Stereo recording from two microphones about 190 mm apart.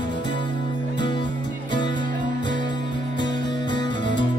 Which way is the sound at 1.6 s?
25° left (ahead or behind).